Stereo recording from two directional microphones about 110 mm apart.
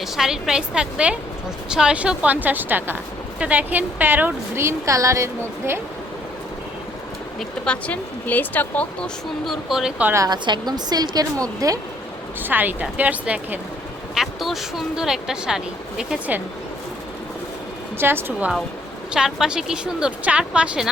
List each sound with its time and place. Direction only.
0.0 s a woman's voice: 5° right (ahead or behind); by 5.8 s 25° right (ahead or behind)
7.3 s speech: 10° left (ahead or behind)
9.5 s speech: 5° right (ahead or behind)
10.2 s a woman's voice: 45° right (ahead or behind)
12.4 s a woman's voice: 15° right (ahead or behind)
14.2 s speech: centre (ahead or behind)
17.9 s a woman's voice: 20° right (ahead or behind)